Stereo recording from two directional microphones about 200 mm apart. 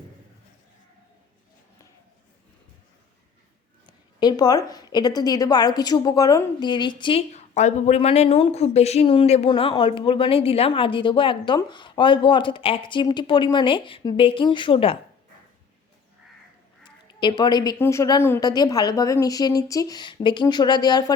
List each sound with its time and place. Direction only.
3.8 s a woman's voice: 20° left (ahead or behind)
16.8 s a woman's voice: 25° left (ahead or behind)